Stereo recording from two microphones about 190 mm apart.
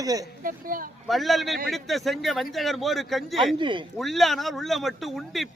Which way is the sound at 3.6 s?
25° right (ahead or behind).